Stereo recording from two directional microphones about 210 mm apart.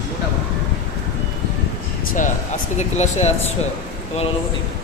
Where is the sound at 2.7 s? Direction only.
35° left (ahead or behind).